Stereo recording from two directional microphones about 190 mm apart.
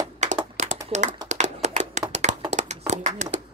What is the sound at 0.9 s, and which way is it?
Speech, 40° right (ahead or behind).